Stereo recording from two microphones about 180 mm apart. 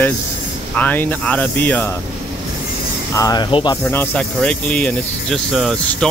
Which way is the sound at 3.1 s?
20° left (ahead or behind).